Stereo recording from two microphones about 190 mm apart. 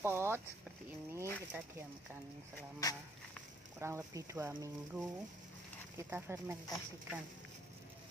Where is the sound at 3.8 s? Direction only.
15° right (ahead or behind).